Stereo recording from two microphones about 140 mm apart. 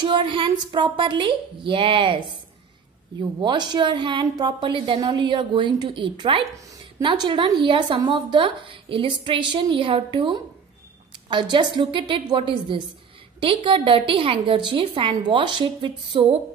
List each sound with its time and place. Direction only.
0.0 s a woman's voice: 35° right (ahead or behind)